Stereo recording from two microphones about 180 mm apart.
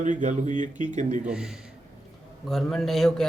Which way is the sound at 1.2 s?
5° right (ahead or behind).